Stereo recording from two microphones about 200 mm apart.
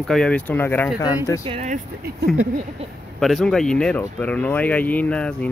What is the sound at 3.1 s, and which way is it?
Speech, centre (ahead or behind).